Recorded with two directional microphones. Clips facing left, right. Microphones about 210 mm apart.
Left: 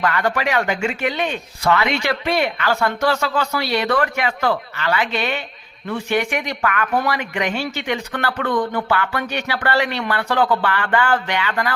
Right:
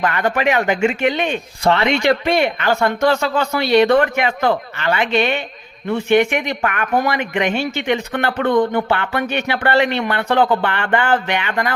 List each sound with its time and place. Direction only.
0.0 s speech: 20° right (ahead or behind)